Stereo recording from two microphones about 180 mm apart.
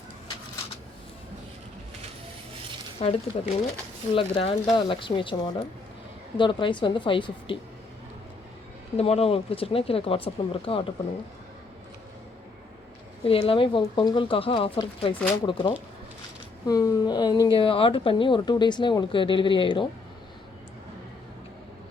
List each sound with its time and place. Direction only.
3.0 s speech: 35° left (ahead or behind)
9.0 s speech: 35° left (ahead or behind)
13.2 s speech: 30° left (ahead or behind)